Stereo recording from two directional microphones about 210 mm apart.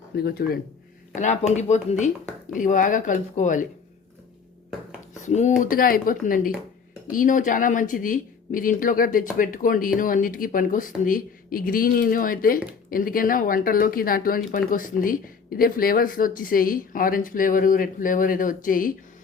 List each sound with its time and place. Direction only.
0.2 s speech: 50° left (ahead or behind)
1.1 s speech: 35° left (ahead or behind)
5.2 s speech: 35° left (ahead or behind)